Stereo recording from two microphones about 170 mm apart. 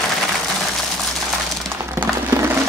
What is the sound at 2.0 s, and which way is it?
Music, 15° right (ahead or behind).